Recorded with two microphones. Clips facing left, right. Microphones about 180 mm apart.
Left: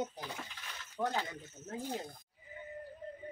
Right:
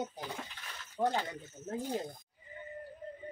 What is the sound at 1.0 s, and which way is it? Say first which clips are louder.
Speech: right 4 dB; 25° right (ahead or behind).